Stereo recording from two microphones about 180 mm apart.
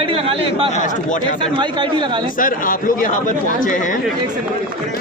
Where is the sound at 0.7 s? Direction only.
45° left (ahead or behind).